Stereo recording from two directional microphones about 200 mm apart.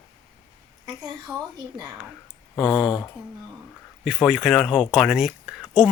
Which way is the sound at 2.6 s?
20° left (ahead or behind).